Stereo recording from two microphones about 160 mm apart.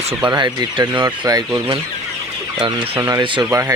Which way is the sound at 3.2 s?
30° right (ahead or behind).